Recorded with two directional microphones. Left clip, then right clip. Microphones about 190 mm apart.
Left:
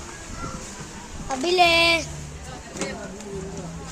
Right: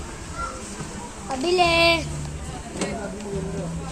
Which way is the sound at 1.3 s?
20° left (ahead or behind).